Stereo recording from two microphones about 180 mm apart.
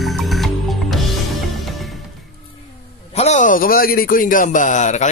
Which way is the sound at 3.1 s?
40° left (ahead or behind).